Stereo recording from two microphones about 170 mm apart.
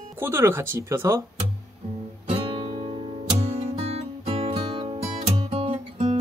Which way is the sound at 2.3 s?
30° right (ahead or behind).